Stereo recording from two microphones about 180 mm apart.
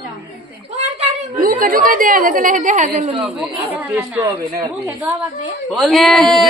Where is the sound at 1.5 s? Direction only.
50° right (ahead or behind).